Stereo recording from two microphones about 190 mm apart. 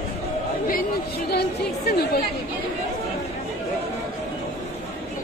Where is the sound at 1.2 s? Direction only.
60° left (ahead or behind).